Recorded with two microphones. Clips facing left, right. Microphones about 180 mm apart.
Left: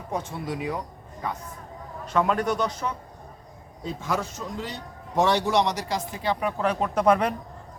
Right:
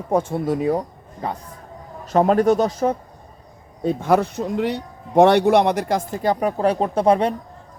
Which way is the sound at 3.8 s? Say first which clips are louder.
Right 11 dB; 60° right (ahead or behind).